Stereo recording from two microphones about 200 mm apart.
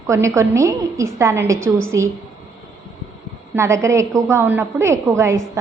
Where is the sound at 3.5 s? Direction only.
15° right (ahead or behind).